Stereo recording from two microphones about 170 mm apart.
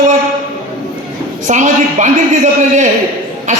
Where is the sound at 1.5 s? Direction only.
45° right (ahead or behind).